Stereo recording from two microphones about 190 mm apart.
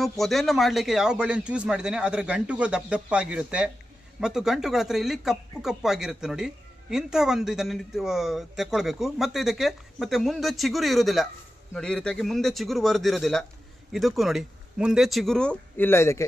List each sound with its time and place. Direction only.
0.2 s speech: centre (ahead or behind)